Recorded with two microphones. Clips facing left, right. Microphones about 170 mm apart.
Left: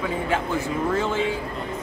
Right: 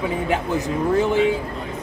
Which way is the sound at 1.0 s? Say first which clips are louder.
Right 9 dB; 15° right (ahead or behind).